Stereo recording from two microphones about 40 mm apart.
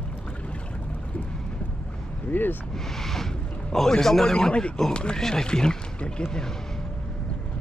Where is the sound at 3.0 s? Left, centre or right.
Centre.